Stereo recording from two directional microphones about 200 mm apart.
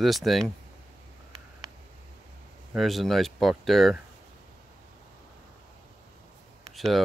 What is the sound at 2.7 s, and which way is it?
Speech, centre (ahead or behind).